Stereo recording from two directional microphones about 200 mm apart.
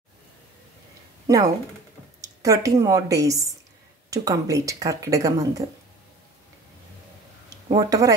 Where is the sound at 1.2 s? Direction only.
15° right (ahead or behind).